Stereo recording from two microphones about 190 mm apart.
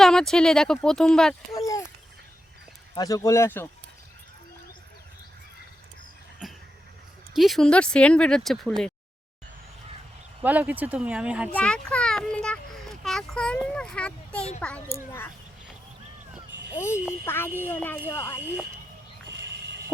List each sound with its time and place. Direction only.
0.0 s speech: centre (ahead or behind)
1.5 s speech: 15° left (ahead or behind)
2.9 s speech: 20° left (ahead or behind)
6.4 s a sound: centre (ahead or behind)
7.3 s speech: centre (ahead or behind)
10.4 s speech: 10° right (ahead or behind)
11.5 s a child's voice: 5° left (ahead or behind)
16.7 s speech: 15° left (ahead or behind)